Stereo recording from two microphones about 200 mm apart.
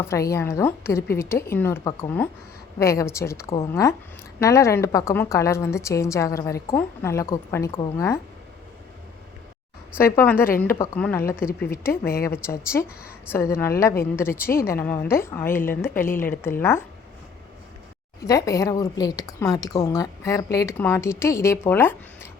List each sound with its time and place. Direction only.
0.0 s a woman's voice: 15° left (ahead or behind)
10.0 s a woman's voice: 10° left (ahead or behind)
12.2 s a woman's voice: 15° left (ahead or behind)
18.3 s a woman's voice: 15° left (ahead or behind)